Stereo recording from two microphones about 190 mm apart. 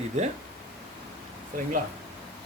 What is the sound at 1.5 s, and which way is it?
Speech, 45° right (ahead or behind).